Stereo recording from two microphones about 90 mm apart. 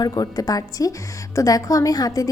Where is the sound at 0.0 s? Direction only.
45° left (ahead or behind).